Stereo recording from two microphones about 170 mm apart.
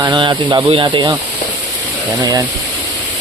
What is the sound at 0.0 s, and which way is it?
Speech, 25° right (ahead or behind).